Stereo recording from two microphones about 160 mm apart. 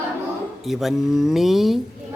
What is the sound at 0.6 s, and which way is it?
Speech, centre (ahead or behind).